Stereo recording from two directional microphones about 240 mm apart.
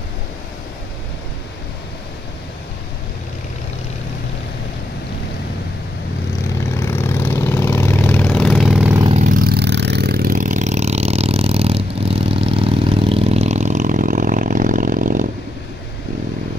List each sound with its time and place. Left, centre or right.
6.8 s vehicle: centre
9.0 s vehicle: right